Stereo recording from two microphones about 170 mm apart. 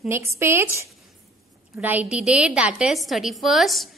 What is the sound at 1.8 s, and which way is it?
A woman's voice, 10° right (ahead or behind).